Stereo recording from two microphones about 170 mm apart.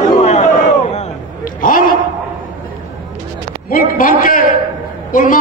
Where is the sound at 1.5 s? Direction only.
55° left (ahead or behind).